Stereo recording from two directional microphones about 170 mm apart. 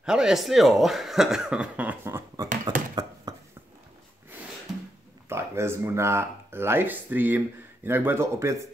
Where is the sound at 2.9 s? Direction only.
20° right (ahead or behind).